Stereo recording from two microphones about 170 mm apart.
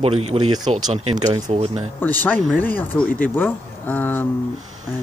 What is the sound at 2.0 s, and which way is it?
Speech, 10° left (ahead or behind).